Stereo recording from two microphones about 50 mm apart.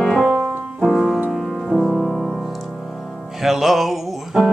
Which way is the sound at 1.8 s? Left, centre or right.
Centre.